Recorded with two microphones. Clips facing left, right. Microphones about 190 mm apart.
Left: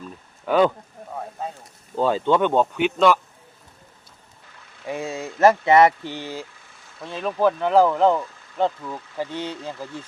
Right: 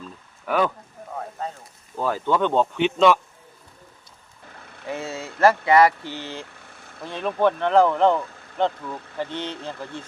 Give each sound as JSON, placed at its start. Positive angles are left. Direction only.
{"t": 0.4, "sound": "speech", "side_deg": 25}
{"t": 2.0, "sound": "speech", "side_deg": 20}
{"t": 4.9, "sound": "speech", "side_deg": 15}
{"t": 6.6, "sound": "vehicle", "side_deg": -60}
{"t": 7.0, "sound": "speech", "side_deg": 0}